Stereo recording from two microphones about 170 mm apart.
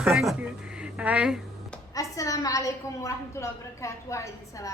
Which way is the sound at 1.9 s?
20° left (ahead or behind).